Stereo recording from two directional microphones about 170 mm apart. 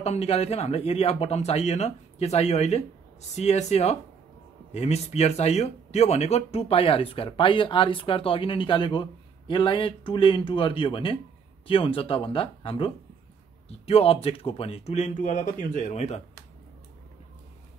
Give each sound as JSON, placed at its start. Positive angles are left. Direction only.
{"t": 0.0, "sound": "speech", "side_deg": 40}